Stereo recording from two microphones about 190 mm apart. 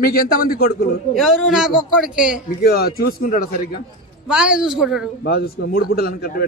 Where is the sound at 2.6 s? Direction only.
55° left (ahead or behind).